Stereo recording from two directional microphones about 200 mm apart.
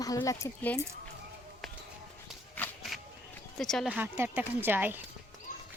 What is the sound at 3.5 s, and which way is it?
Speech, centre (ahead or behind).